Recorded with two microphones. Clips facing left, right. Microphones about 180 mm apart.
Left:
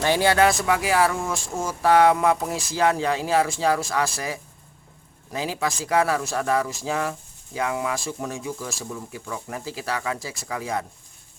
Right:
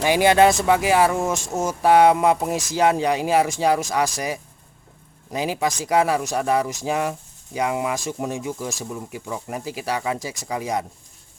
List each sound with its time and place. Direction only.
0.0 s speech: 15° right (ahead or behind)